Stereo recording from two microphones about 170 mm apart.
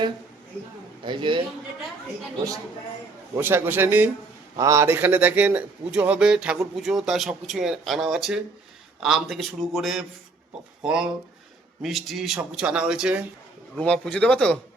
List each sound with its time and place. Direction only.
1.0 s a man's voice: 30° right (ahead or behind)
3.3 s a man's voice: 15° right (ahead or behind)
13.7 s speech: 5° left (ahead or behind)